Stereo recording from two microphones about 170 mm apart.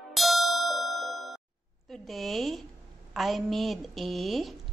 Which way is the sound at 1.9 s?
Centre (ahead or behind).